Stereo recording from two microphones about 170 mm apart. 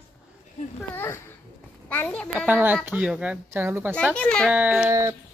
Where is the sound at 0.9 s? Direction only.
15° left (ahead or behind).